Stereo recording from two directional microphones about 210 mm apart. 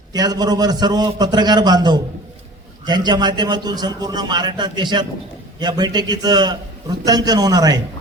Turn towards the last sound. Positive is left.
turn(degrees=-20)  # may be behind; listen again after turning